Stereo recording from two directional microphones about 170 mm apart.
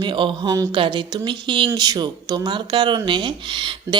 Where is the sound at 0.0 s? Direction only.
30° right (ahead or behind).